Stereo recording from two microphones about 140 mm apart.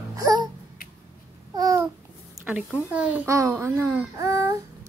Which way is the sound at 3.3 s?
20° right (ahead or behind).